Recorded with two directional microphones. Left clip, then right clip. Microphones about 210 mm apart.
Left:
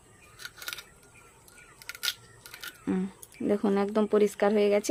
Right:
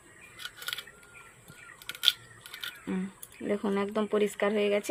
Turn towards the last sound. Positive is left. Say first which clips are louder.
# left 3 dB
turn(degrees=35)  # may be behind; listen again after turning